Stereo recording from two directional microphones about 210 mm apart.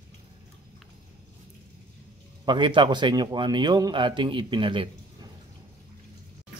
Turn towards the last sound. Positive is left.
turn(degrees=-25)  # may be behind; listen again after turning